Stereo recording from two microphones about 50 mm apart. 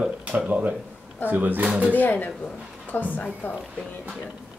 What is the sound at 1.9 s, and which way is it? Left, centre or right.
Speech, left.